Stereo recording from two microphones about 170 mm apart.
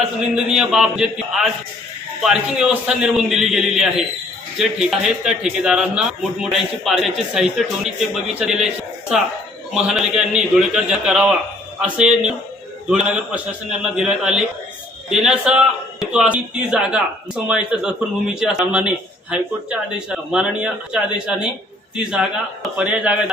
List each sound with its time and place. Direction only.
0.3 s a man's voice: 5° right (ahead or behind)
2.2 s a man's voice: 5° right (ahead or behind)
8.6 s a sound: 5° right (ahead or behind)
9.7 s a man's voice: 5° right (ahead or behind)